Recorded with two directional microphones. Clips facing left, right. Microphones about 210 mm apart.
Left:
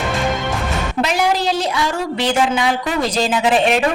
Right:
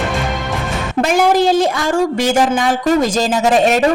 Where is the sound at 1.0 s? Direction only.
50° right (ahead or behind).